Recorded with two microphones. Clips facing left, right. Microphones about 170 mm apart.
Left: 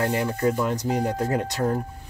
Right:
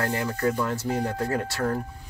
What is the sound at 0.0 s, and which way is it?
Speech, 20° left (ahead or behind).